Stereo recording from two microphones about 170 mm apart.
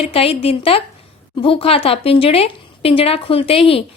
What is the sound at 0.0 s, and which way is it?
Speech, 35° left (ahead or behind).